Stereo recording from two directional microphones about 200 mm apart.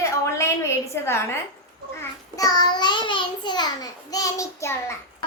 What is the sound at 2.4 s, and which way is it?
Child singing, 20° left (ahead or behind).